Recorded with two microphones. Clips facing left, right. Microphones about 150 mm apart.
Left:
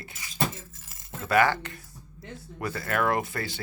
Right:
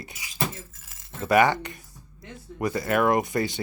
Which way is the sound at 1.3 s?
20° right (ahead or behind).